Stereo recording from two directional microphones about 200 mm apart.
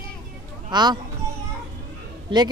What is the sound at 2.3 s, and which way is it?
Speech, 25° right (ahead or behind).